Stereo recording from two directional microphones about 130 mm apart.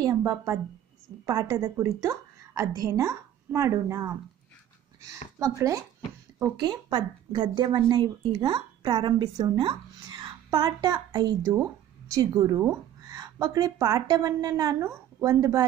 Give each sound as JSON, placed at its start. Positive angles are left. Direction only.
{"t": 0.0, "sound": "a woman's voice", "side_deg": -25}
{"t": 6.6, "sound": "a woman's voice", "side_deg": -35}